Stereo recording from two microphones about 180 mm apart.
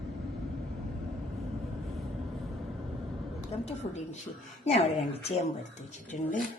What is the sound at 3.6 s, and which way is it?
A woman's voice, 40° left (ahead or behind).